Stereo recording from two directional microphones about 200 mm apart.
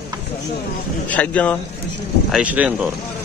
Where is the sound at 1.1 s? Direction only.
5° left (ahead or behind).